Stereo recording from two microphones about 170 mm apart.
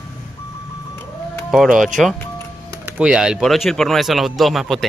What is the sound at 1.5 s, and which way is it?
Speech, centre (ahead or behind).